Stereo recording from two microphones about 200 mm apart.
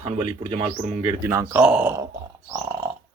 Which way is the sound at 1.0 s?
10° right (ahead or behind).